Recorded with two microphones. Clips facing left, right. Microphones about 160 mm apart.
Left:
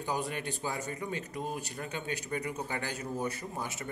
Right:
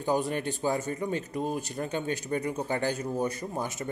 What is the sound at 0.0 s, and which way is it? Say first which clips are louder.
A man's voice: right 7 dB; 30° right (ahead or behind).